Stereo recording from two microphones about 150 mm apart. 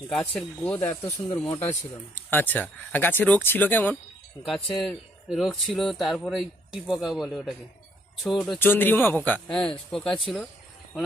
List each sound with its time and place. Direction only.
0.1 s speech: 5° left (ahead or behind)
0.8 s speech: 20° left (ahead or behind)
4.4 s speech: centre (ahead or behind)
8.5 s speech: 15° left (ahead or behind)